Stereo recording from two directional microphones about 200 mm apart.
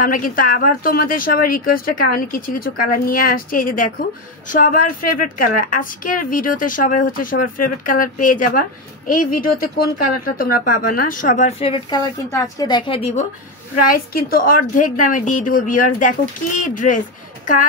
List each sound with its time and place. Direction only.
0.0 s a woman's voice: 45° left (ahead or behind); by 13.2 s 30° left (ahead or behind)
13.9 s a woman's voice: 45° left (ahead or behind)